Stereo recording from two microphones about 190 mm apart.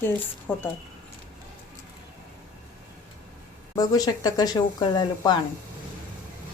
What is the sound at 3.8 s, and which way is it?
Speech, 20° left (ahead or behind).